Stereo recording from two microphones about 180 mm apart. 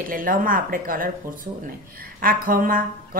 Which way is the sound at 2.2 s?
50° right (ahead or behind).